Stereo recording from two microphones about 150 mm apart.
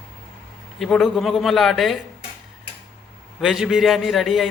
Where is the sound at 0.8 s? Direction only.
Centre (ahead or behind).